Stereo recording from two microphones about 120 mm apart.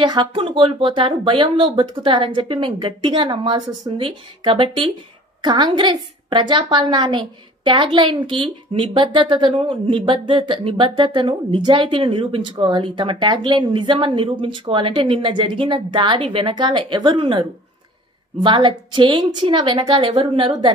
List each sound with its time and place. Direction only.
0.0 s a woman's voice: 40° right (ahead or behind)